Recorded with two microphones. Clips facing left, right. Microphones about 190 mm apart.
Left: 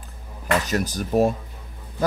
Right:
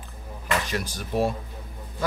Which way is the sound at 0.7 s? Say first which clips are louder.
Left 6 dB; 40° left (ahead or behind).